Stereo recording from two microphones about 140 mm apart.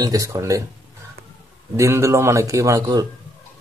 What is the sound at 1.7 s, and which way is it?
Speech, 20° right (ahead or behind).